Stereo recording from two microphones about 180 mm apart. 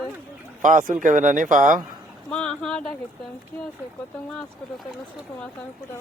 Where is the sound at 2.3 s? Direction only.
5° left (ahead or behind).